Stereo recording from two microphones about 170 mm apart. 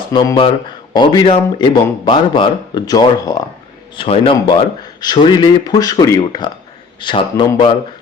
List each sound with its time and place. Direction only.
0.1 s a man's voice: 25° left (ahead or behind)
3.9 s a man's voice: 35° left (ahead or behind)